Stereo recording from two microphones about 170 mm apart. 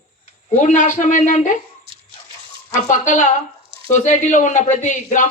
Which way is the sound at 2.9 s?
45° left (ahead or behind).